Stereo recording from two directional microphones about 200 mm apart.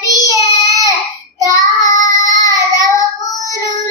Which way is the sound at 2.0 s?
15° left (ahead or behind).